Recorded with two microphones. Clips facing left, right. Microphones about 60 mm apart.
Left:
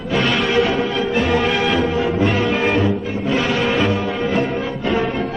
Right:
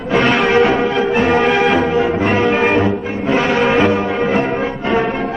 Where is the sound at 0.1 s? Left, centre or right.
Right.